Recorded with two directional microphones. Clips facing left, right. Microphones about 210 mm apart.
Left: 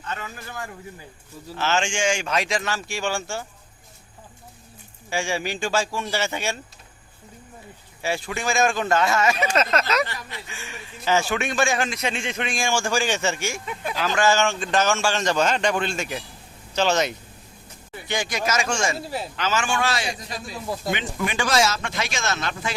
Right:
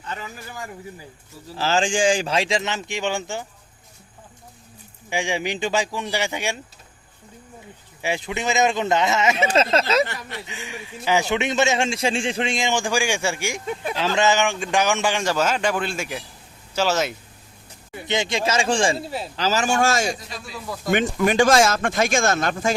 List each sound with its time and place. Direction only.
0.1 s a man's voice: 15° right (ahead or behind)
1.5 s a man's voice: 35° right (ahead or behind)
5.0 s a man's voice: 15° right (ahead or behind)
8.0 s a man's voice: 20° right (ahead or behind)
10.1 s speech: 55° right (ahead or behind)
10.4 s a man's voice: 20° right (ahead or behind)
18.1 s a man's voice: 25° right (ahead or behind)
18.9 s speech: centre (ahead or behind)
19.4 s speech: 35° right (ahead or behind)